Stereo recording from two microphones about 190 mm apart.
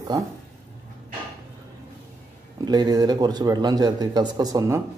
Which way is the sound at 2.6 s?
20° right (ahead or behind).